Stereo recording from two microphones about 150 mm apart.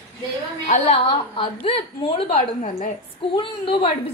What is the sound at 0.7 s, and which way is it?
Speech, 55° left (ahead or behind).